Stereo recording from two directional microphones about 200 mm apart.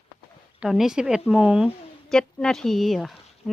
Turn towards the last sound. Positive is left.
turn(degrees=0)  # may be behind; listen again after turning